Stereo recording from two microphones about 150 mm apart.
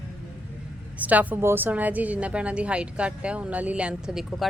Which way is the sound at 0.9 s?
10° right (ahead or behind).